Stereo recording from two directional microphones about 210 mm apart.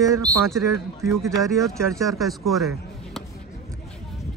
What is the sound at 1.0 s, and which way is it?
Speech, centre (ahead or behind).